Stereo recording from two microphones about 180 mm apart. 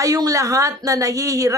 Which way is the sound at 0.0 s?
20° right (ahead or behind).